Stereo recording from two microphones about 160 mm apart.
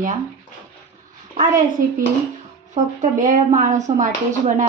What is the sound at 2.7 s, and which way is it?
Speech, 55° right (ahead or behind).